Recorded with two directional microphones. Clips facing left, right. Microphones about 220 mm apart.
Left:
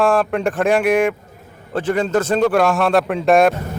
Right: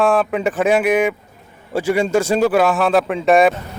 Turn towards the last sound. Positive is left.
turn(degrees=0)  # may be behind; listen again after turning